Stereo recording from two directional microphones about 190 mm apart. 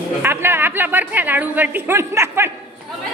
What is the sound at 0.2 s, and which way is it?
A woman's voice, 10° right (ahead or behind).